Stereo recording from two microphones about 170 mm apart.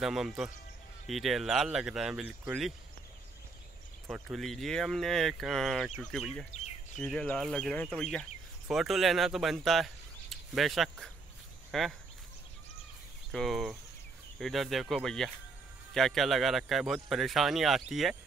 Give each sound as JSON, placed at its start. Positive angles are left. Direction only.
{"t": 0.0, "sound": "speech", "side_deg": 0}
{"t": 4.1, "sound": "speech", "side_deg": 0}
{"t": 13.3, "sound": "speech", "side_deg": 0}